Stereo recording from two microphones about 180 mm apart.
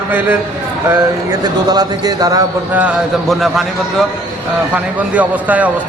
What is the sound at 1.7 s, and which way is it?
Speech, 20° right (ahead or behind).